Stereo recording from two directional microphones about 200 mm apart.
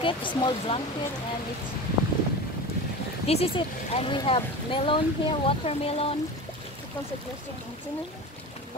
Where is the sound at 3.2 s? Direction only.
30° left (ahead or behind).